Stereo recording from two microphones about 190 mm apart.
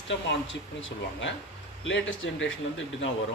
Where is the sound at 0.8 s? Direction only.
85° left.